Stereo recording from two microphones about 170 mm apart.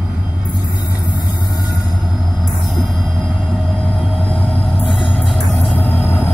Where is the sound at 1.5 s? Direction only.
20° left (ahead or behind).